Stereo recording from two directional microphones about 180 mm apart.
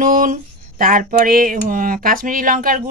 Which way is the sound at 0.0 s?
45° right (ahead or behind).